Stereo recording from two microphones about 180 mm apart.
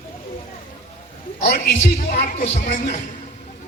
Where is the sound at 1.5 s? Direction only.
65° left (ahead or behind).